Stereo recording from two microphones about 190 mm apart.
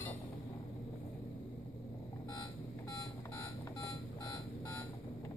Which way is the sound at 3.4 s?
15° left (ahead or behind).